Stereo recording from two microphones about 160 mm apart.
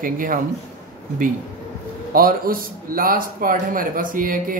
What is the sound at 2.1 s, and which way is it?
Speech, 65° right (ahead or behind).